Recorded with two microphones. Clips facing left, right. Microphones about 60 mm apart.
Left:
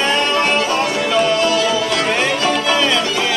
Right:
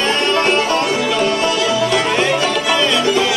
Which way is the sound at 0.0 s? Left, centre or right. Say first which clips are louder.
Right 1 dB; centre.